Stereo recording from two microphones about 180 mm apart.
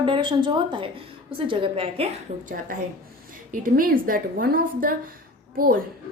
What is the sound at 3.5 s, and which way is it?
A woman's voice, 50° right (ahead or behind).